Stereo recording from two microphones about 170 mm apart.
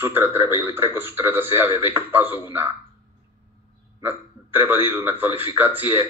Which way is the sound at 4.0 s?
10° right (ahead or behind).